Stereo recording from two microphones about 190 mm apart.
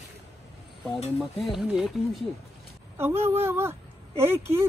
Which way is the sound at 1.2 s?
Centre (ahead or behind).